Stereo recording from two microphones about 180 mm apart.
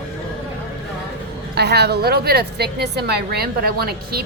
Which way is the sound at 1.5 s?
65° right (ahead or behind).